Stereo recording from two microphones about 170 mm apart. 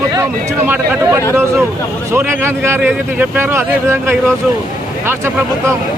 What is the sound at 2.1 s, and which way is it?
Speech, 15° right (ahead or behind).